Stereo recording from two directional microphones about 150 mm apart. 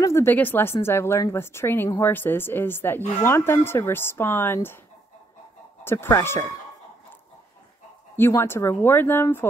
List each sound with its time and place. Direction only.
0.0 s speech: 20° left (ahead or behind)
5.9 s speech: 15° left (ahead or behind)
8.2 s speech: 15° left (ahead or behind)